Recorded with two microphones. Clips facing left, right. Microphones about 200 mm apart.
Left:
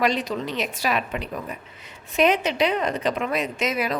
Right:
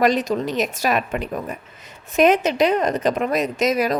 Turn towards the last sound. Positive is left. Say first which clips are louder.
# right 6 dB
turn(degrees=-40)  # may be behind; listen again after turning